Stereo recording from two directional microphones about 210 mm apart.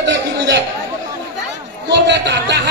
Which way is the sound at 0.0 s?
55° right (ahead or behind).